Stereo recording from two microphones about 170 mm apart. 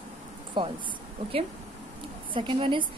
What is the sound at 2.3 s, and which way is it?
Speech, 30° right (ahead or behind).